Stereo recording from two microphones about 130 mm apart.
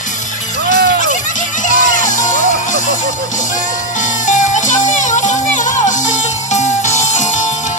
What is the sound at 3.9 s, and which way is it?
Music, 75° left (ahead or behind).